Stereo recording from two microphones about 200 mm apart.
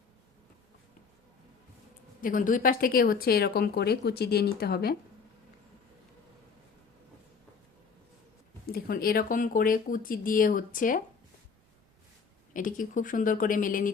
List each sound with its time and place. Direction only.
2.2 s speech: 40° left (ahead or behind)
8.6 s speech: 50° left (ahead or behind)
12.5 s speech: 40° left (ahead or behind)